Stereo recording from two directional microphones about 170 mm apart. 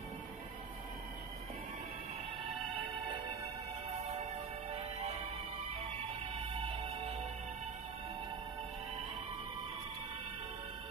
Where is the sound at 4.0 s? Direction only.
40° right (ahead or behind).